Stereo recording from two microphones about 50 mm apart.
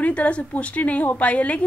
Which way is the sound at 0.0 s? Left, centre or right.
Left.